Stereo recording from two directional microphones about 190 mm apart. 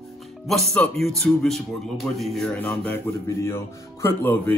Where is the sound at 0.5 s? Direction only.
Centre (ahead or behind).